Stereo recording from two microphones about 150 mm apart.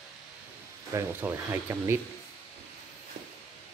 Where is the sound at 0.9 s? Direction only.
15° right (ahead or behind).